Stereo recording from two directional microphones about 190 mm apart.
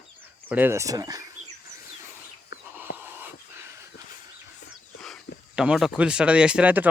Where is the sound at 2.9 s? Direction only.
55° left (ahead or behind).